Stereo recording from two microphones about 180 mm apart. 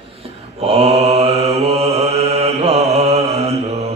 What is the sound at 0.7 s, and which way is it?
Mantra, 35° right (ahead or behind).